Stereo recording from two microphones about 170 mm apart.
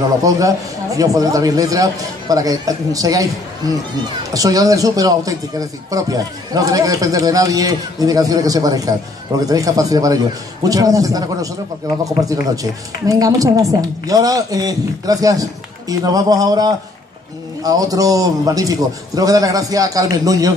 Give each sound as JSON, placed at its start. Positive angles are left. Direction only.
{"t": 0.3, "sound": "a man's voice", "side_deg": -20}